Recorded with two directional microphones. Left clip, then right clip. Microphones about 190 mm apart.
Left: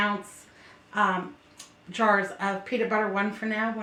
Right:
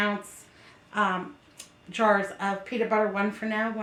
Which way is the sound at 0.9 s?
25° right (ahead or behind).